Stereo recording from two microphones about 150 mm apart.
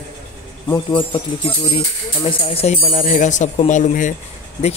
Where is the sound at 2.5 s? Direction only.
40° left (ahead or behind).